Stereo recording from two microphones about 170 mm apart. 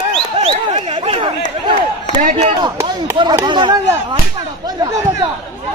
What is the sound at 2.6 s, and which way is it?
Speech, 25° right (ahead or behind).